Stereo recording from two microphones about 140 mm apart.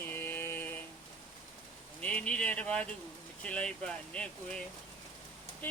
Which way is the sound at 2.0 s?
10° left (ahead or behind).